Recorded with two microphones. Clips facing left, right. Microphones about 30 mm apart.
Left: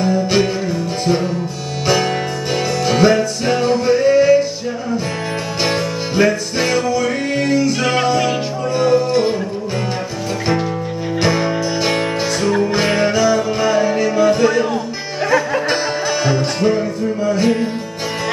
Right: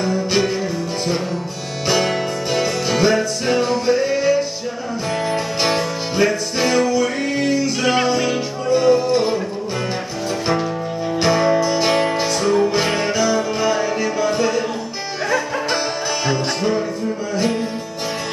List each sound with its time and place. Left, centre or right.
0.0 s music: centre
1.9 s music: centre
5.6 s music: centre
11.1 s music: centre
17.3 s music: centre